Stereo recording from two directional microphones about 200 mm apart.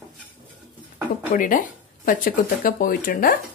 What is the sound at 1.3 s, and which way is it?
Speech, 40° left (ahead or behind).